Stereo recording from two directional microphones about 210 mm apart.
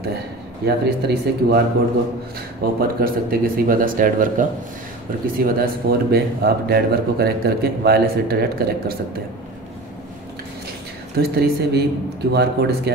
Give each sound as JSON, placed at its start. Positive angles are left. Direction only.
{"t": 0.7, "sound": "speech", "side_deg": -50}
{"t": 2.6, "sound": "speech", "side_deg": -45}
{"t": 11.1, "sound": "speech", "side_deg": -45}